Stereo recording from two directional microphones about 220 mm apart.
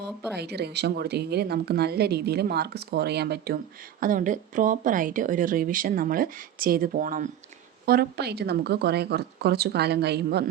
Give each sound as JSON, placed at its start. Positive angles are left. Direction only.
{"t": 0.3, "sound": "a woman's voice", "side_deg": -50}